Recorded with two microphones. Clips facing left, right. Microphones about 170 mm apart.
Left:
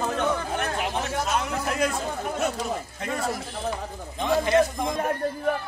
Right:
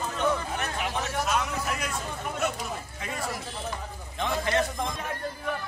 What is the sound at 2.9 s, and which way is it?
Speech, 50° left (ahead or behind).